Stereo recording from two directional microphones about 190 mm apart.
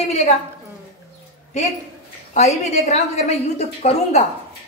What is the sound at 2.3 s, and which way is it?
A woman's voice, 35° left (ahead or behind).